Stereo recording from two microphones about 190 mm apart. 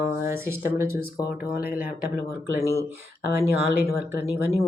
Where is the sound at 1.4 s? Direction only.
50° left (ahead or behind).